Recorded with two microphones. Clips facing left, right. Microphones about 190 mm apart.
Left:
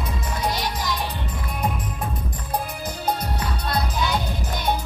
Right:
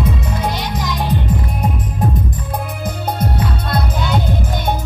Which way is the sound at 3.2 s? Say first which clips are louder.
Right 7 dB; 55° right (ahead or behind).